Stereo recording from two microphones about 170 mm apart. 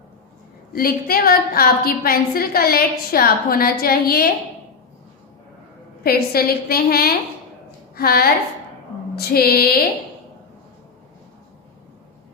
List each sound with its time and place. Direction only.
0.7 s a woman's voice: 60° left (ahead or behind)
6.0 s a woman's voice: 65° left (ahead or behind)